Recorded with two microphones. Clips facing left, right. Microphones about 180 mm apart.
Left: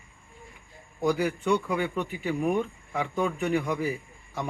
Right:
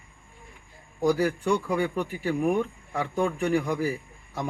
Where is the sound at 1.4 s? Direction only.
5° left (ahead or behind).